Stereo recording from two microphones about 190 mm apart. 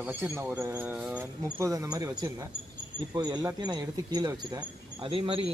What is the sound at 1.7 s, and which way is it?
Speech, 20° right (ahead or behind).